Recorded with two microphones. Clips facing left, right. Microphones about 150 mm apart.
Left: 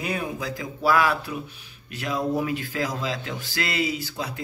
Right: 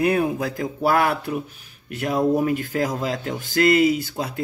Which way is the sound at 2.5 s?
50° right (ahead or behind).